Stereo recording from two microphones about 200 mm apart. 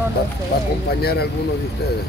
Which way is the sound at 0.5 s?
50° left (ahead or behind).